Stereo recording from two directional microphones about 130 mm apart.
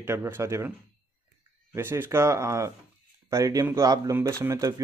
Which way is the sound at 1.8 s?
20° right (ahead or behind).